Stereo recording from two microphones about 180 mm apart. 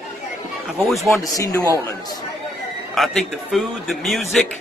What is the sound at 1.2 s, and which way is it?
Speech, 15° left (ahead or behind).